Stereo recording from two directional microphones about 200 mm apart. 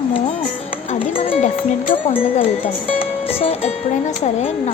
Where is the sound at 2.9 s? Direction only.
30° left (ahead or behind).